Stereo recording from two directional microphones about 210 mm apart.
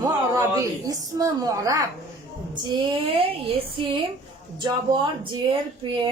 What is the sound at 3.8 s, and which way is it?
Speech, 25° right (ahead or behind).